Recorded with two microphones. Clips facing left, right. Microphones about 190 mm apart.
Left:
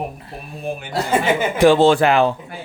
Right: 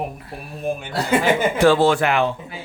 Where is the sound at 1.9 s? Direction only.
30° left (ahead or behind).